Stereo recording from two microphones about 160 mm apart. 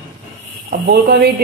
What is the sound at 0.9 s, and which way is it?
Speech, 90° right.